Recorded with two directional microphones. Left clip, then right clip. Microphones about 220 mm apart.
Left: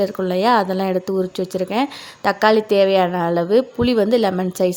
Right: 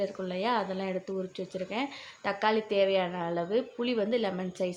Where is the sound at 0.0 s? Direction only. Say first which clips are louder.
Left 13 dB; 45° left (ahead or behind).